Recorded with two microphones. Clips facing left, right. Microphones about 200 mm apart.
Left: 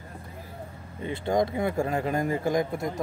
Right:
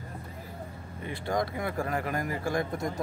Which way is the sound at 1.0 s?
25° left (ahead or behind).